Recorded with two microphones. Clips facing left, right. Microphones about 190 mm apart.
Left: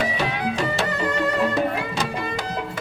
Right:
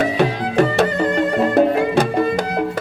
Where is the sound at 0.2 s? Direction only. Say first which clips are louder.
Right 8 dB; 60° right (ahead or behind).